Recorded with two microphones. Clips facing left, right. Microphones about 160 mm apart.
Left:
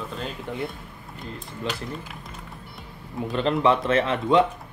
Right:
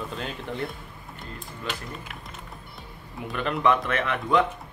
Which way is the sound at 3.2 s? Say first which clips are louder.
Left 4 dB; 30° left (ahead or behind).